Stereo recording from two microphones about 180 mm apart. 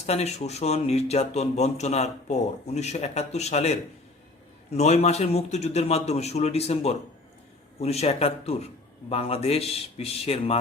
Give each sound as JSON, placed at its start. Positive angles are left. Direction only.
{"t": 0.0, "sound": "speech", "side_deg": 35}